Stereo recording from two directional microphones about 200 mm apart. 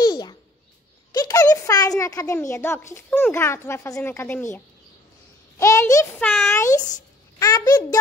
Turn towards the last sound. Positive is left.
turn(degrees=20)  # may be behind; listen again after turning